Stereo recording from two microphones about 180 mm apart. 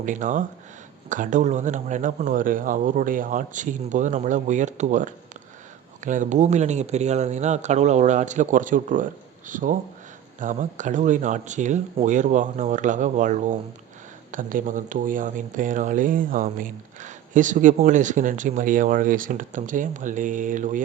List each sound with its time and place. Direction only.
0.0 s speech: 45° right (ahead or behind)